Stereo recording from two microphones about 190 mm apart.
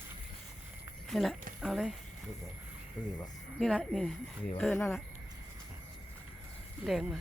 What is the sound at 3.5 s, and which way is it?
Speech, centre (ahead or behind).